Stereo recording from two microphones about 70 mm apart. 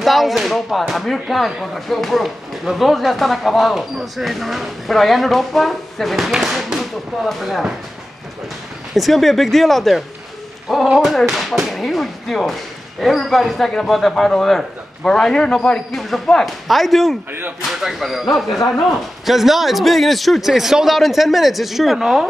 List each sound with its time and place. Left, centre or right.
0.0 s speech: centre
8.9 s speech: centre
17.3 s speech: right
17.6 s speech: centre